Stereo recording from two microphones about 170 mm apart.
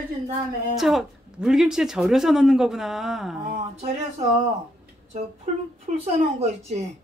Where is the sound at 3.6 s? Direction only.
40° right (ahead or behind).